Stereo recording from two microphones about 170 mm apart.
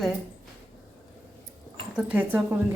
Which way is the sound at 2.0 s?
10° right (ahead or behind).